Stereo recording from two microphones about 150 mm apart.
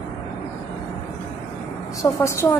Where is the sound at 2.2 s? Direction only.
20° left (ahead or behind).